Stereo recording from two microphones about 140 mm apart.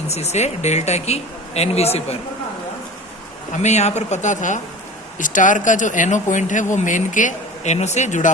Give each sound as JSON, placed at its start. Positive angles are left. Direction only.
{"t": 0.1, "sound": "speech", "side_deg": 50}
{"t": 3.6, "sound": "speech", "side_deg": 55}